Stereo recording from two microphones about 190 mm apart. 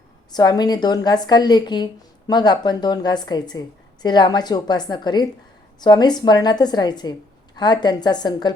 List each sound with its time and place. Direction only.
0.3 s a woman's voice: 20° left (ahead or behind)